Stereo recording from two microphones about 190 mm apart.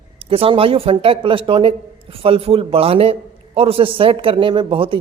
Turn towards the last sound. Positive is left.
turn(degrees=-30)  # may be behind; listen again after turning